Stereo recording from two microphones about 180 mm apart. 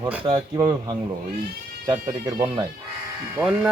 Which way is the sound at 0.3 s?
25° right (ahead or behind).